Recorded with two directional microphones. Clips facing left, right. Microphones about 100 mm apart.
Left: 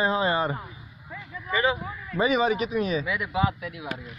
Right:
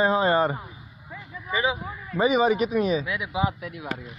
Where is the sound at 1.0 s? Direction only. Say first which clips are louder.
Left 1 dB; 15° right (ahead or behind).